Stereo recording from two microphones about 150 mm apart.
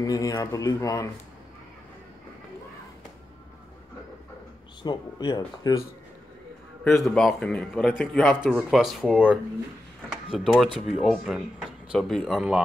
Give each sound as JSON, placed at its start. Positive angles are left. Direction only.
{"t": 0.0, "sound": "a man's voice", "side_deg": 25}
{"t": 4.8, "sound": "a man's voice", "side_deg": 30}
{"t": 6.8, "sound": "a man's voice", "side_deg": 5}
{"t": 10.3, "sound": "a man's voice", "side_deg": 0}